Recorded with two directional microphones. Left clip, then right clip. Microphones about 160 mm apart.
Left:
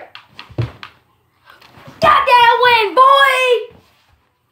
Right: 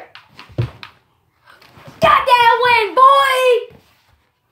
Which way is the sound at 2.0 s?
10° right (ahead or behind).